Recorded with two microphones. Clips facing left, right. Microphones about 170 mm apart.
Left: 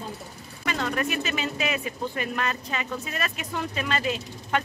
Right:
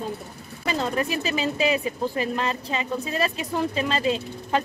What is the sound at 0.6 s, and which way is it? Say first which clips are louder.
Speech: right 2 dB; 30° right (ahead or behind).